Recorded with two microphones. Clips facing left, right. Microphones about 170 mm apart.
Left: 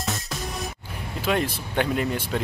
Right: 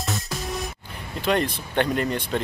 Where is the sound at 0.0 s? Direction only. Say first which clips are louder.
Right 1 dB; centre (ahead or behind).